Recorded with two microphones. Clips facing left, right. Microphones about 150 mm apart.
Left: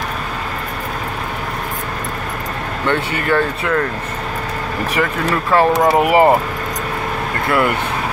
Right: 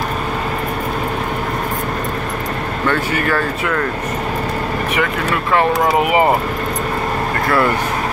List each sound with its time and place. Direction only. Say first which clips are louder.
2.9 s speech: left 1 dB; 25° left (ahead or behind)
5.8 s speech: left 2 dB; 30° left (ahead or behind)